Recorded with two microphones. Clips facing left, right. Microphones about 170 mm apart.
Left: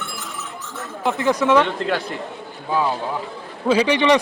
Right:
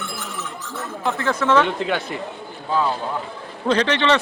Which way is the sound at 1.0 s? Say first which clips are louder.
Left 3 dB; 15° left (ahead or behind).